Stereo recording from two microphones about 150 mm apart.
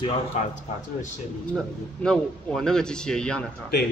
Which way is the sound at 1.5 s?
5° left (ahead or behind).